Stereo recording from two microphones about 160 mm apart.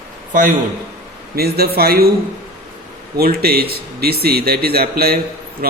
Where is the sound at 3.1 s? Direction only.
75° right (ahead or behind).